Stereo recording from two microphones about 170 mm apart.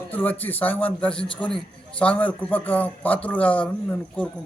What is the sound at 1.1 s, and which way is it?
Speech, 30° left (ahead or behind).